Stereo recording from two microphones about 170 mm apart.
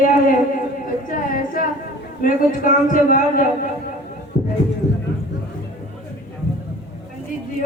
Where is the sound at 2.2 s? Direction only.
55° left (ahead or behind).